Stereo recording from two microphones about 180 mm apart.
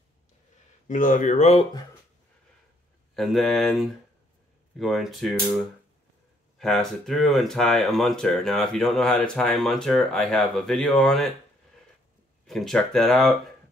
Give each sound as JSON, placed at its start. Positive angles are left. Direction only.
{"t": 0.8, "sound": "speech", "side_deg": 45}
{"t": 3.2, "sound": "speech", "side_deg": 0}
{"t": 6.6, "sound": "speech", "side_deg": 0}
{"t": 12.4, "sound": "speech", "side_deg": 0}